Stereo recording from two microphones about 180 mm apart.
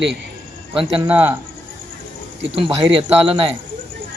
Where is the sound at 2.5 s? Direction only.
30° right (ahead or behind).